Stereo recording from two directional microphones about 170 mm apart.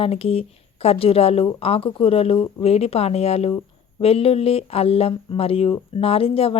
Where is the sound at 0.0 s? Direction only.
35° left (ahead or behind).